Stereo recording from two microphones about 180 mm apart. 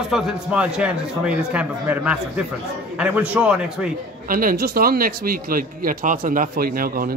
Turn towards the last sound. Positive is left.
turn(degrees=-55)  # may be behind; listen again after turning